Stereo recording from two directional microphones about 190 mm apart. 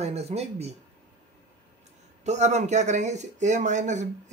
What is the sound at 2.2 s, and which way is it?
Speech, 35° right (ahead or behind).